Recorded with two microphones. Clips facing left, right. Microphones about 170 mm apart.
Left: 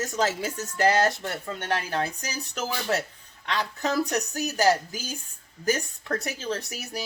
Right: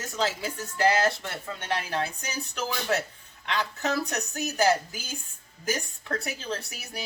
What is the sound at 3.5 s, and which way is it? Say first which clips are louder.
Speech: left 1 dB; 35° left (ahead or behind).